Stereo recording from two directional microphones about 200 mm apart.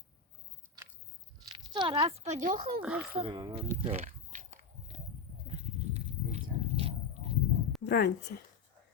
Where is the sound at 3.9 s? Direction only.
35° right (ahead or behind).